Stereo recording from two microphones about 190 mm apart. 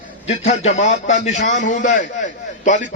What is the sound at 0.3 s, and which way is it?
A man's voice, 35° left (ahead or behind).